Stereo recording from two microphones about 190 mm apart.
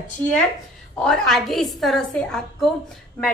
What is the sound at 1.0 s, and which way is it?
A woman's voice, 5° left (ahead or behind).